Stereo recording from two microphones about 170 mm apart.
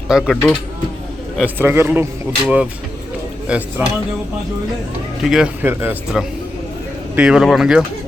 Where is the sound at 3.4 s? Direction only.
5° right (ahead or behind).